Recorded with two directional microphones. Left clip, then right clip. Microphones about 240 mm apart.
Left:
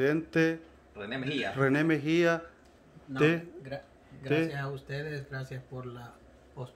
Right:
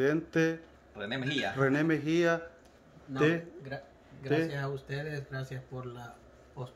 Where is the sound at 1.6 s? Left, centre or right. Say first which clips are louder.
Left 2 dB; centre.